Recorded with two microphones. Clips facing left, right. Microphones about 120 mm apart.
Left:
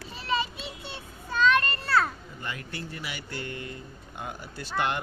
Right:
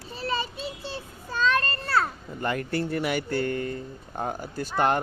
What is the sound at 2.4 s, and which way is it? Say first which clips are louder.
Speech: right 11 dB; 50° right (ahead or behind).